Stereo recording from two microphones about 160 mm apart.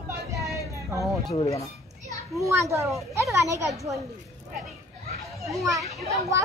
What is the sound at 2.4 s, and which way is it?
A child's voice, 15° right (ahead or behind).